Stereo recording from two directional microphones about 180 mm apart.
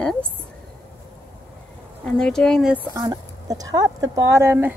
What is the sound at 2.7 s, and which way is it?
A woman's voice, 20° right (ahead or behind).